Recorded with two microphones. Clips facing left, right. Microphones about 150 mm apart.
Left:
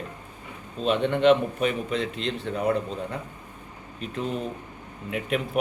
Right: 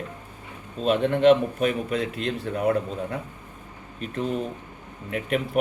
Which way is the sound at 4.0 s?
Centre (ahead or behind).